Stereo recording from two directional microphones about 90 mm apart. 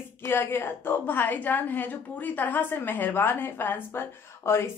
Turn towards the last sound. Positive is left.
turn(degrees=30)  # may be behind; listen again after turning